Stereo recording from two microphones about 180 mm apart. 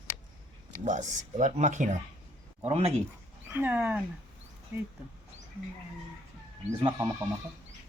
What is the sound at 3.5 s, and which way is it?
Speech, 10° right (ahead or behind).